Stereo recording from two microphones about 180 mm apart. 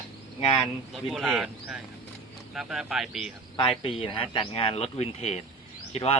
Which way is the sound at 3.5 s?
30° left (ahead or behind).